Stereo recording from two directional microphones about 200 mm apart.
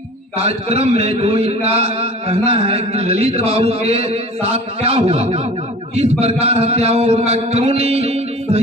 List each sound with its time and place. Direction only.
0.4 s a man's voice: 30° right (ahead or behind)